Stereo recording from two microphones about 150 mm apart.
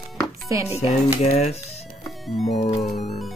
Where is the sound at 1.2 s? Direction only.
45° left (ahead or behind).